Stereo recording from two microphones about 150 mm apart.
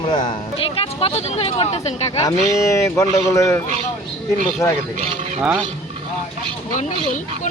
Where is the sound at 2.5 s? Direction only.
20° left (ahead or behind).